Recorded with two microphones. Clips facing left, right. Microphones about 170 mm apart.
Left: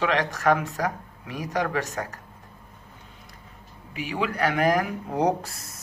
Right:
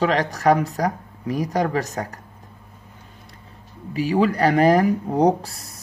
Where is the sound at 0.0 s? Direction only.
40° right (ahead or behind).